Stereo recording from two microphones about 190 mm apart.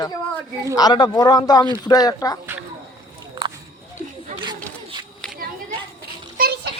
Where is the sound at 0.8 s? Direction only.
20° left (ahead or behind).